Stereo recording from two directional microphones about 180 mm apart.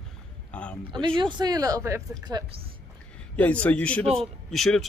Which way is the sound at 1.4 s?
20° right (ahead or behind).